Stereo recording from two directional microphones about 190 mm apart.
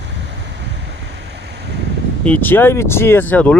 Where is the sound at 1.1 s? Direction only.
60° right (ahead or behind).